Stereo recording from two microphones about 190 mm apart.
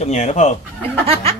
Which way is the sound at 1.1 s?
30° right (ahead or behind).